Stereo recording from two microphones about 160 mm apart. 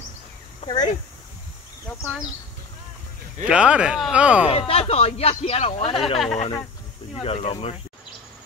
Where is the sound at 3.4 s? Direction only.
5° right (ahead or behind).